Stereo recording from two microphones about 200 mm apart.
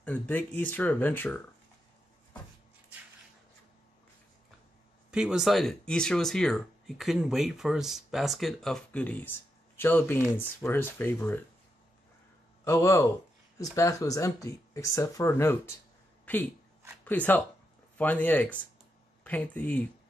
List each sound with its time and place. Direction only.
0.0 s speech: 10° left (ahead or behind)
5.1 s speech: 5° right (ahead or behind)
12.6 s speech: 15° left (ahead or behind)